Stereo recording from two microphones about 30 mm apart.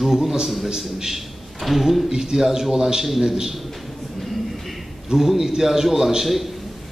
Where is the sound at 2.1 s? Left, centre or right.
Centre.